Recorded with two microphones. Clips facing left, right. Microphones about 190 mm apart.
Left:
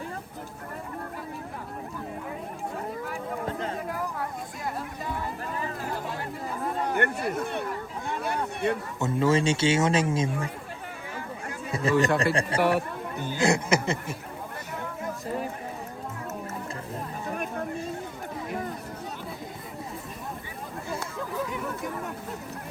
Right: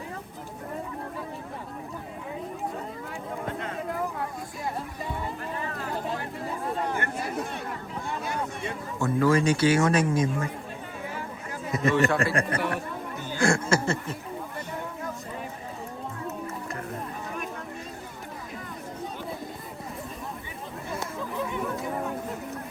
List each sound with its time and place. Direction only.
3.4 s a sound: 30° left (ahead or behind)
6.9 s speech: 60° left (ahead or behind)
8.2 s a sound: 60° left (ahead or behind)
9.0 s speech: 20° left (ahead or behind)
11.7 s a man's voice: 30° left (ahead or behind)
11.9 s speech: 20° left (ahead or behind)
12.3 s speech: 30° left (ahead or behind)
13.3 s speech: 20° left (ahead or behind)